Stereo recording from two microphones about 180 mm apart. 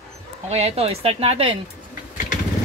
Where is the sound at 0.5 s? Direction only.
35° right (ahead or behind).